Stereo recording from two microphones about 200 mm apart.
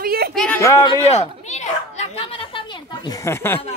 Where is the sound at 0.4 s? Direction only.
10° left (ahead or behind).